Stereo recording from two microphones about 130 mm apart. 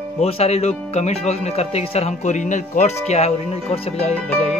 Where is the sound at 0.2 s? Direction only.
55° left (ahead or behind).